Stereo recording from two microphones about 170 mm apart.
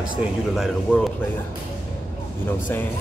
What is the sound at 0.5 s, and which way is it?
Speech, centre (ahead or behind).